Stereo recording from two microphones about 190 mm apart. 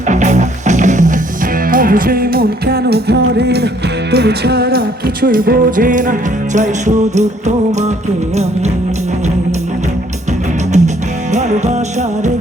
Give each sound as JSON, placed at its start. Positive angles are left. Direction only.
{"t": 0.1, "sound": "music", "side_deg": -40}
{"t": 10.7, "sound": "music", "side_deg": -40}